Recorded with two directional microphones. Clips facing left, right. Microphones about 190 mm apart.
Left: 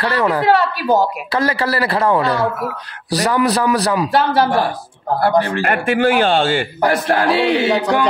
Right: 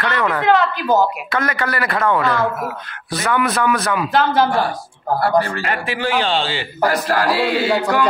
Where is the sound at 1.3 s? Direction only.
30° left (ahead or behind).